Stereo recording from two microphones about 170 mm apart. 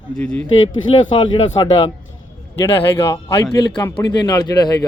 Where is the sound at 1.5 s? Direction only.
30° left (ahead or behind).